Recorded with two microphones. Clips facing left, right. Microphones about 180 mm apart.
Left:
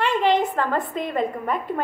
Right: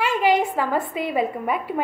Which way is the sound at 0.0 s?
10° right (ahead or behind).